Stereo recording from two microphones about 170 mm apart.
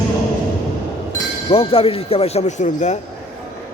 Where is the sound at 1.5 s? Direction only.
35° left (ahead or behind).